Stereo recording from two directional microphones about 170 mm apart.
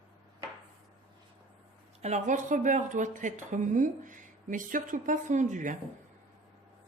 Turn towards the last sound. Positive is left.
turn(degrees=-45)  # may be behind; listen again after turning